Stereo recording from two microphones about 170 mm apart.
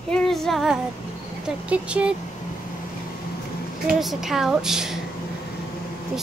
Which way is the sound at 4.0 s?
Centre (ahead or behind).